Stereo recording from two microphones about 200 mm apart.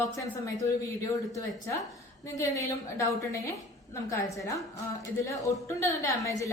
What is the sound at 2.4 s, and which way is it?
A woman's voice, 15° left (ahead or behind).